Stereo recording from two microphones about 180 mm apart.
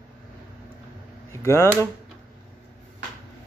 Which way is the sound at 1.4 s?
15° left (ahead or behind).